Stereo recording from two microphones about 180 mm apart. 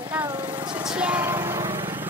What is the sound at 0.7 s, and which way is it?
Speech, 5° right (ahead or behind).